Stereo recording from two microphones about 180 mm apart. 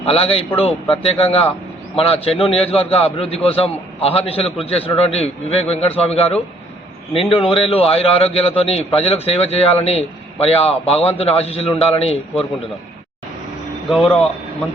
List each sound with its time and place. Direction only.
0.0 s a man's voice: 35° left (ahead or behind)
13.9 s speech: centre (ahead or behind)